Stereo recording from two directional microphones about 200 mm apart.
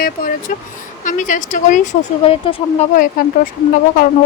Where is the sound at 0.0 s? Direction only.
45° left (ahead or behind); by 2.8 s 30° left (ahead or behind).